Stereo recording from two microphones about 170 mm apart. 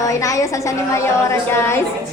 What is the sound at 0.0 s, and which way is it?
A woman's voice, 20° left (ahead or behind).